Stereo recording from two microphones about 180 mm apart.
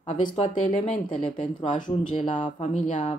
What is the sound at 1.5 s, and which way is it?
Speech, 25° left (ahead or behind).